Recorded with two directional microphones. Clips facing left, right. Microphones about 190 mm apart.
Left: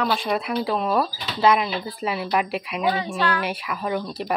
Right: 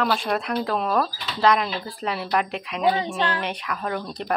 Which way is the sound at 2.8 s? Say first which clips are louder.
Right 3 dB; 25° right (ahead or behind).